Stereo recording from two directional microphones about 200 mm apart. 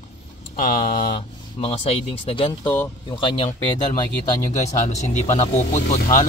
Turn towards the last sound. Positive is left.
turn(degrees=40)  # may be behind; listen again after turning